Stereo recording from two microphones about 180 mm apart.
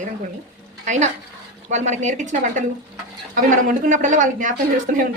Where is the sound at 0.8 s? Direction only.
40° right (ahead or behind).